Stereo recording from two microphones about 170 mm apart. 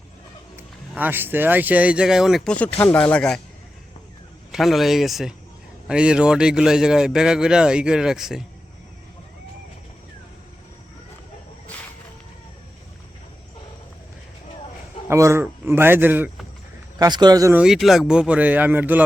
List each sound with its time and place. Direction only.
0.9 s speech: 10° right (ahead or behind); by 3.4 s 5° left (ahead or behind)
4.5 s speech: centre (ahead or behind)
15.0 s a man's voice: 15° right (ahead or behind)
17.0 s speech: 25° right (ahead or behind)
17.6 s speech: centre (ahead or behind)